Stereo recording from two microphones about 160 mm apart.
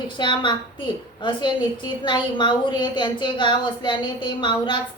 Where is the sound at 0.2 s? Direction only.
30° left (ahead or behind).